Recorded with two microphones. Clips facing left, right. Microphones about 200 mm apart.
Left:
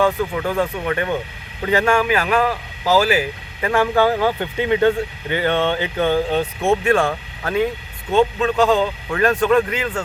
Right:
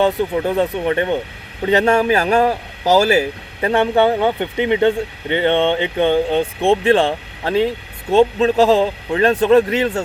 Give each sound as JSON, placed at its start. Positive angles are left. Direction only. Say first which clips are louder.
{"t": 0.0, "sound": "speech", "louder": "right 2 dB", "side_deg": -25}
{"t": 2.0, "sound": "a man's voice", "louder": "right 4 dB", "side_deg": -40}